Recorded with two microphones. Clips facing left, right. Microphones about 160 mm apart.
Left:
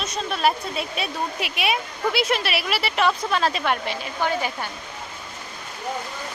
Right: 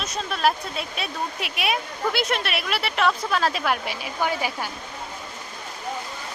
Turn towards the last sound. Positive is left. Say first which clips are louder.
# left 1 dB
turn(degrees=-10)  # may be behind; listen again after turning